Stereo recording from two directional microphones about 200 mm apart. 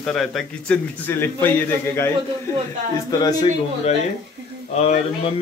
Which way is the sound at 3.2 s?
25° left (ahead or behind).